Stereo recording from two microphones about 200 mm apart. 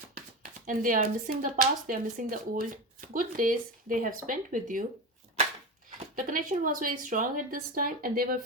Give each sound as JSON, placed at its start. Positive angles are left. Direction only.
{"t": 0.6, "sound": "speech", "side_deg": -40}
{"t": 6.1, "sound": "a woman's voice", "side_deg": -40}